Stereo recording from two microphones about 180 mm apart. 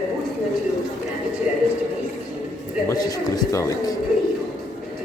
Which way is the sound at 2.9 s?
20° left (ahead or behind).